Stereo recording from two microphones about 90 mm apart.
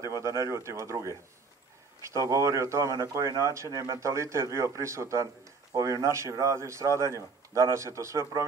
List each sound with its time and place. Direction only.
0.0 s speech: 35° right (ahead or behind)